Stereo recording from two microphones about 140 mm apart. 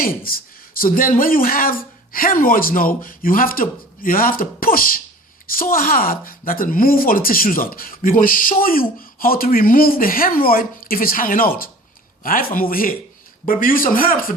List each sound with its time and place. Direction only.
0.0 s speech: 90° left